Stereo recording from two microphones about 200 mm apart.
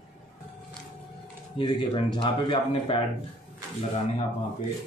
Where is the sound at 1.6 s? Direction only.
25° left (ahead or behind).